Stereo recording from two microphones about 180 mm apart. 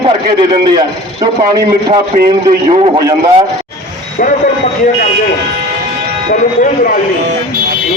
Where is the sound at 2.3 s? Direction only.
30° right (ahead or behind).